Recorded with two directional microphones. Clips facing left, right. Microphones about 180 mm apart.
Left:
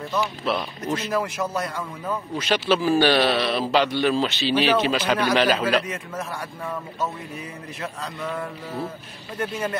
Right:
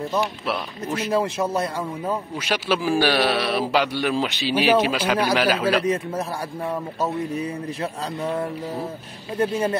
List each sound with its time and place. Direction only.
0.5 s a man's voice: 10° right (ahead or behind)
1.1 s a man's voice: 30° right (ahead or behind)
2.3 s a man's voice: 10° right (ahead or behind)
6.7 s speech: 30° right (ahead or behind)